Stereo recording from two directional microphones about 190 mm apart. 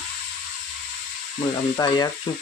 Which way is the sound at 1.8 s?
20° left (ahead or behind).